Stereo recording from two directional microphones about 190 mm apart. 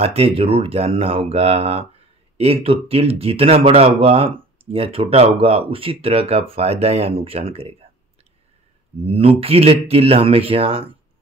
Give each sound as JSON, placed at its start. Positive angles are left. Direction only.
{"t": 0.0, "sound": "speech", "side_deg": -30}
{"t": 9.0, "sound": "speech", "side_deg": -30}